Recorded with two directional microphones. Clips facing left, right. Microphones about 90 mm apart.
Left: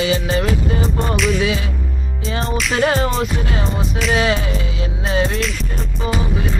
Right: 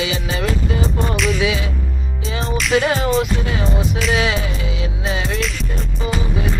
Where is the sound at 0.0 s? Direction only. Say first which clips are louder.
Left 4 dB; 40° left (ahead or behind).